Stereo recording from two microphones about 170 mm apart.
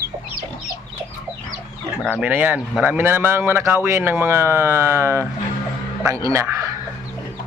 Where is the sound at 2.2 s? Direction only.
10° right (ahead or behind).